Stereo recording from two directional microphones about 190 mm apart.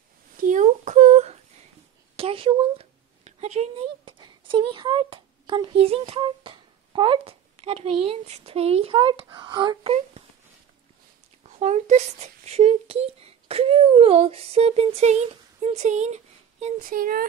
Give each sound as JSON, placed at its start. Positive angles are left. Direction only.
{"t": 0.4, "sound": "a sound", "side_deg": -40}
{"t": 2.1, "sound": "speech", "side_deg": -30}
{"t": 11.4, "sound": "speech", "side_deg": -35}